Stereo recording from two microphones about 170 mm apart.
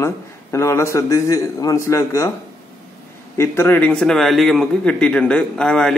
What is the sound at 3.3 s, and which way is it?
A man's voice, 15° left (ahead or behind).